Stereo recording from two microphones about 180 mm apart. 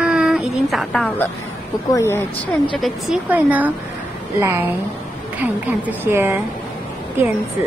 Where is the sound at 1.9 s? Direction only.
15° left (ahead or behind).